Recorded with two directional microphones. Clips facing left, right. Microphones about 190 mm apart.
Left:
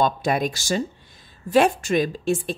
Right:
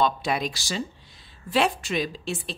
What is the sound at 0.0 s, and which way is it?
A woman's voice, 50° left (ahead or behind).